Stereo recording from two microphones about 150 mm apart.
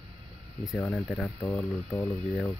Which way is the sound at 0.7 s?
10° left (ahead or behind).